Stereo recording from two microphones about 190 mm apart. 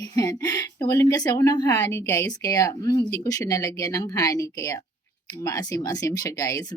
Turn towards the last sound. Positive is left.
turn(degrees=20)  # may be behind; listen again after turning